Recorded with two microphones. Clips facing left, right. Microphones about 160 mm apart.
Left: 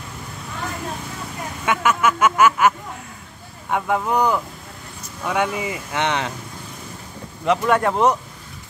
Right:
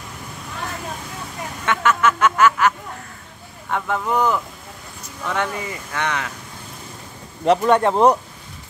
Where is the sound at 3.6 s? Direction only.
10° left (ahead or behind); by 6.3 s 25° left (ahead or behind).